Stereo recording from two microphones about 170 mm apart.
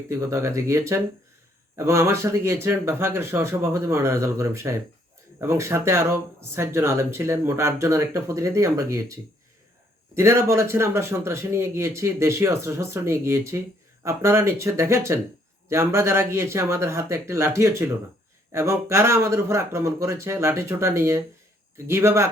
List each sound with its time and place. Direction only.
0.1 s speech: 15° right (ahead or behind)
10.2 s speech: 15° right (ahead or behind)